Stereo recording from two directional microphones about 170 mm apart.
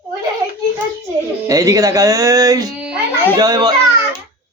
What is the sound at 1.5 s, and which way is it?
Speech, 20° right (ahead or behind).